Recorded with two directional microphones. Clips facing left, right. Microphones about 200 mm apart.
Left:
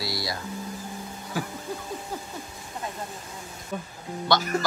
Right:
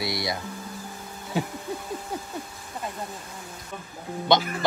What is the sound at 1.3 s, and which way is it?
Speech, 25° right (ahead or behind).